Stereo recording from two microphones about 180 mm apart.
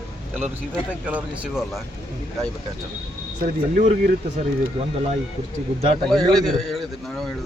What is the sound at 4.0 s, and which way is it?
Speech, 55° right (ahead or behind).